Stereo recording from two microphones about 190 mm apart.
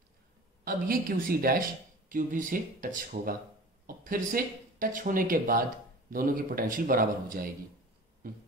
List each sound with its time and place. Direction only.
0.7 s speech: 50° right (ahead or behind)